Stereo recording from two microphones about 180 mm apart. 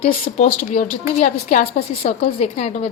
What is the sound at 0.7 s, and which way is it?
A woman's voice, 50° left (ahead or behind).